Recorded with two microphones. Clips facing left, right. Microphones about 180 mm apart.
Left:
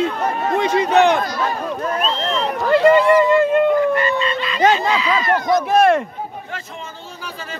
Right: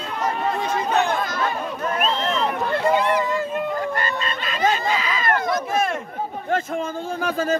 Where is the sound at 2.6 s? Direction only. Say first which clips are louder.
Left 10 dB; 75° left (ahead or behind).